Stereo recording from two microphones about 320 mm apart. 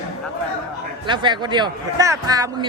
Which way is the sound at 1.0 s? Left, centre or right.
Centre.